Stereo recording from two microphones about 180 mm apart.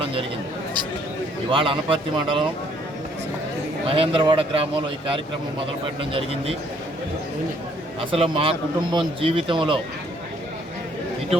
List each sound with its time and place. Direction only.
0.0 s a sound: 30° right (ahead or behind)
1.5 s a man's voice: 30° right (ahead or behind)
3.8 s a man's voice: 30° right (ahead or behind)
6.1 s a man's voice: 30° right (ahead or behind)
8.1 s a man's voice: 30° right (ahead or behind)